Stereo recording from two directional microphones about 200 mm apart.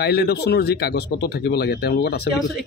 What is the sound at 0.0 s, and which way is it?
Speech, 55° left (ahead or behind).